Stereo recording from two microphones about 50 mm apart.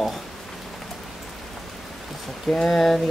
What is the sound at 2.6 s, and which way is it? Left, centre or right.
Speech, centre.